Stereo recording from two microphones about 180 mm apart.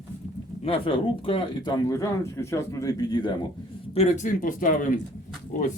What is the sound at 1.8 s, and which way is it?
Speech, 15° left (ahead or behind).